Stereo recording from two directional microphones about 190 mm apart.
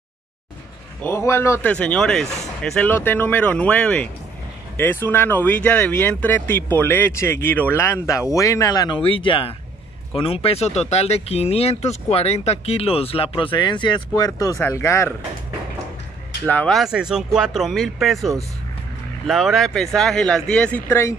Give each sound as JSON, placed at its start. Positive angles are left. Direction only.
{"t": 1.0, "sound": "speech", "side_deg": 15}
{"t": 16.4, "sound": "speech", "side_deg": 5}